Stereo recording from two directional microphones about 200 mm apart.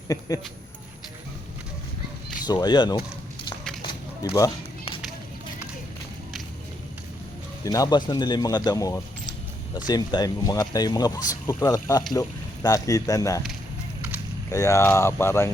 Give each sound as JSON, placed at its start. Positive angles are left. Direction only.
{"t": 2.5, "sound": "speech", "side_deg": 20}
{"t": 3.8, "sound": "a sound", "side_deg": 20}
{"t": 7.6, "sound": "speech", "side_deg": 15}
{"t": 14.5, "sound": "speech", "side_deg": 15}